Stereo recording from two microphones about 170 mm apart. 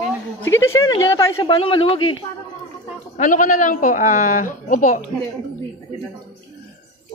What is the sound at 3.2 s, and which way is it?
Speech, 50° left (ahead or behind).